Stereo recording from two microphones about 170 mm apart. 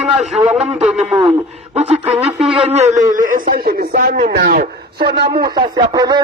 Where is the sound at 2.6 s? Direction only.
40° right (ahead or behind).